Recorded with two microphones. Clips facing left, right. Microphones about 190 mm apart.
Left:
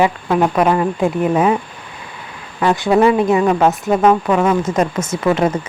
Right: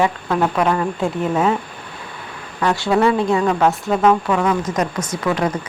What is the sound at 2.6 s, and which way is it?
A woman's voice, 20° left (ahead or behind).